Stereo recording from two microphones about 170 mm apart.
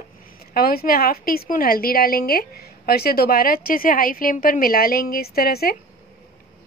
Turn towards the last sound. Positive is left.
turn(degrees=65)  # may be behind; listen again after turning